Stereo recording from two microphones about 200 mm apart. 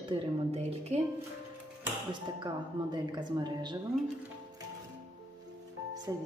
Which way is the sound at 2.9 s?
20° right (ahead or behind).